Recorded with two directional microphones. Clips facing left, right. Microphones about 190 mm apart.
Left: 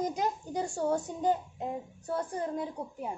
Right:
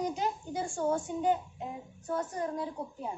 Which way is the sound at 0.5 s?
40° left (ahead or behind).